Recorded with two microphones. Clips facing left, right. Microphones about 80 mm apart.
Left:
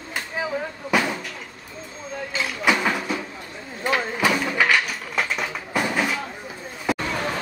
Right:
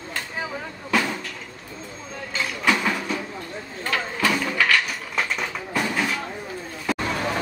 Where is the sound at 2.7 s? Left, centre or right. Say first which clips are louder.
Left 1 dB; centre.